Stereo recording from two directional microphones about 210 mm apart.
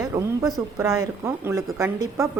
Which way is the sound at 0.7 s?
15° right (ahead or behind).